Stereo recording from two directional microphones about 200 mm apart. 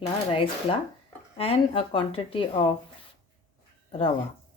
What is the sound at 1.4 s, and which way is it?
A woman's voice, 30° left (ahead or behind).